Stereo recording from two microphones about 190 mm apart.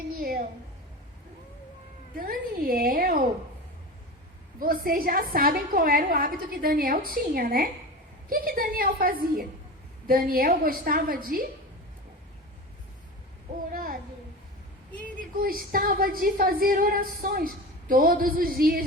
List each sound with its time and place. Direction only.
2.1 s a woman's voice: 50° right (ahead or behind)
4.6 s a woman's voice: 50° right (ahead or behind)
13.7 s a sound: 50° right (ahead or behind)
15.0 s a woman's voice: 50° right (ahead or behind)